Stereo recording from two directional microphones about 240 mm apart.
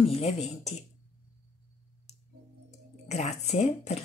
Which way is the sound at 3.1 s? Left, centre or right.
Left.